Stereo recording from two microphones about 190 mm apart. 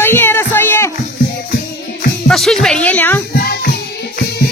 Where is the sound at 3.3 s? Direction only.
50° left (ahead or behind).